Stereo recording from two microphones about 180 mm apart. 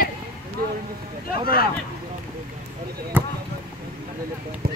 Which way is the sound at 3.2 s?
10° right (ahead or behind).